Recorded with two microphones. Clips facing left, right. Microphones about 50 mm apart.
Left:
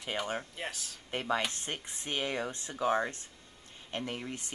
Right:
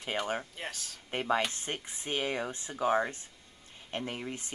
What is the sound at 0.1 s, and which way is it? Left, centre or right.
Speech, centre.